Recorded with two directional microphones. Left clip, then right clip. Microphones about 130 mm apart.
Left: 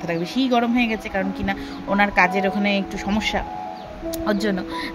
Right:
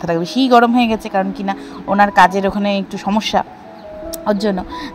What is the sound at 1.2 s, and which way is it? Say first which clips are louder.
A woman's voice: right 6 dB; 35° right (ahead or behind).